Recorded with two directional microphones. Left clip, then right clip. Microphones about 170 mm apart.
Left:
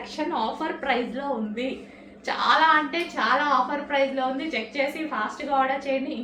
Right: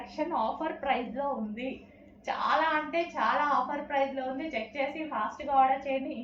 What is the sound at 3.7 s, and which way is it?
Speech, 25° left (ahead or behind).